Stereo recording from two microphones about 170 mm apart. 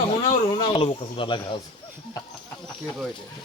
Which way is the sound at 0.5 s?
30° left (ahead or behind).